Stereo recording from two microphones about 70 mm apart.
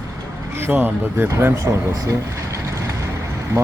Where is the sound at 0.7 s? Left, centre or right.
Right.